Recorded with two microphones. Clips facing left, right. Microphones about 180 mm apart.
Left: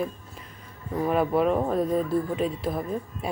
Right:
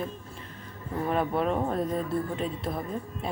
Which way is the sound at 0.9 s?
5° left (ahead or behind).